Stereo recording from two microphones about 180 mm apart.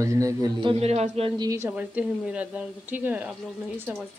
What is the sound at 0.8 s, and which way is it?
Speech, 35° right (ahead or behind).